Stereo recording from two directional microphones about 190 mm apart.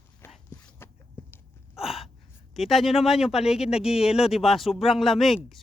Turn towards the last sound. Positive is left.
turn(degrees=0)  # may be behind; listen again after turning